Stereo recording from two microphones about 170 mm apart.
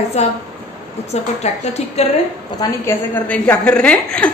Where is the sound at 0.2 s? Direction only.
40° left (ahead or behind).